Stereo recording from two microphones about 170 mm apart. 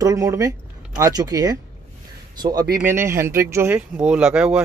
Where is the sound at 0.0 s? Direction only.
20° right (ahead or behind).